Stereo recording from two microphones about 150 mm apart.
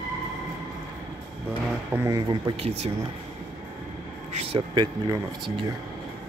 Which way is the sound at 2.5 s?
40° right (ahead or behind).